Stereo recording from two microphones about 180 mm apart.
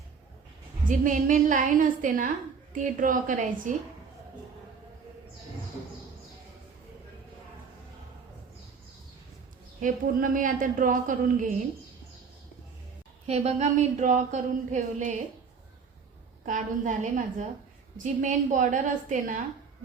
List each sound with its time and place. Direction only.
0.9 s speech: 45° right (ahead or behind)
9.8 s speech: 50° right (ahead or behind)
13.2 s speech: 35° right (ahead or behind)
16.5 s speech: 45° right (ahead or behind)